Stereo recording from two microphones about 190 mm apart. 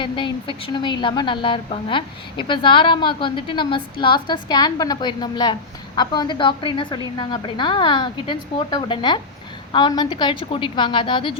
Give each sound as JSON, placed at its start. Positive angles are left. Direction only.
{"t": 0.0, "sound": "a woman's voice", "side_deg": 25}